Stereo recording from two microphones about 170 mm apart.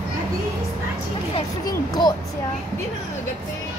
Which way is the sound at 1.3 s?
25° left (ahead or behind).